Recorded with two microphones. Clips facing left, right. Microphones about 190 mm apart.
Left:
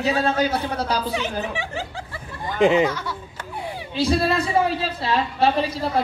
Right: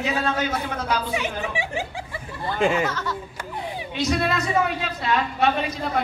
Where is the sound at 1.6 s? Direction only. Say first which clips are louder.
Right 1 dB; 10° right (ahead or behind).